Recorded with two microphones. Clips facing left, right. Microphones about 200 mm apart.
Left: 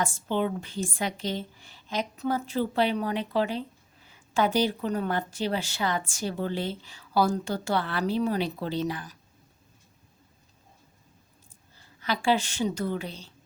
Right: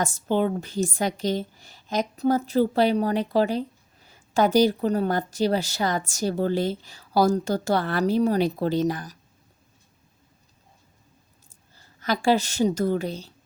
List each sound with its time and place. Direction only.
0.0 s a woman's voice: 40° right (ahead or behind)
11.9 s a woman's voice: 45° right (ahead or behind)